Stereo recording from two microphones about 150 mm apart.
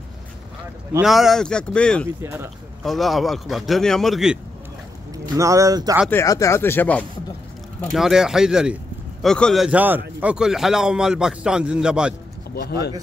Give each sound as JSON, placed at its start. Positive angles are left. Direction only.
{"t": 1.0, "sound": "a man's voice", "side_deg": 0}
{"t": 2.2, "sound": "speech", "side_deg": -15}
{"t": 2.8, "sound": "a man's voice", "side_deg": 0}
{"t": 5.3, "sound": "speech", "side_deg": -20}
{"t": 6.0, "sound": "speech", "side_deg": 20}
{"t": 7.9, "sound": "a man's voice", "side_deg": -5}
{"t": 12.5, "sound": "speech", "side_deg": 90}